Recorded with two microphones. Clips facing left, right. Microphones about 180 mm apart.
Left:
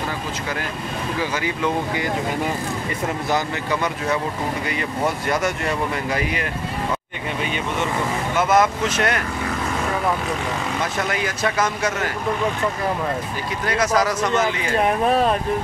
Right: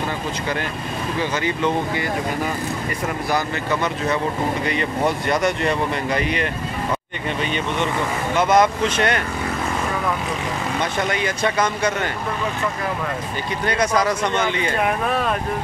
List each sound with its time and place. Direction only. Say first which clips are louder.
1.4 s speech: right 2 dB; 5° left (ahead or behind)
3.3 s speech: right 1 dB; 20° left (ahead or behind)
4.6 s speech: right 2 dB; 5° left (ahead or behind)
8.4 s speech: right 2 dB; 5° left (ahead or behind)
11.1 s speech: right 1 dB; centre (ahead or behind)
13.7 s speech: even; centre (ahead or behind)